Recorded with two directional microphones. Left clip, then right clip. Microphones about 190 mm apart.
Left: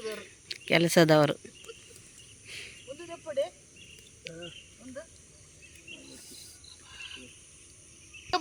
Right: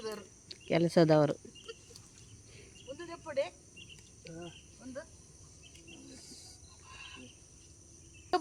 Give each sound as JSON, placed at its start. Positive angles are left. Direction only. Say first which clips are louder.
{"t": 0.0, "sound": "speech", "louder": "left 4 dB", "side_deg": 0}
{"t": 2.5, "sound": "cricket", "louder": "left 16 dB", "side_deg": 5}
{"t": 3.2, "sound": "cricket", "louder": "left 3 dB", "side_deg": -15}
{"t": 8.3, "sound": "fowl", "louder": "left 2 dB", "side_deg": -55}